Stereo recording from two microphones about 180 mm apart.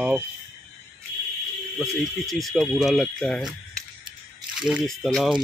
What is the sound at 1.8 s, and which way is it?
Speech, centre (ahead or behind).